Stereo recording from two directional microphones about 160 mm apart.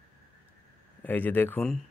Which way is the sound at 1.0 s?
10° left (ahead or behind).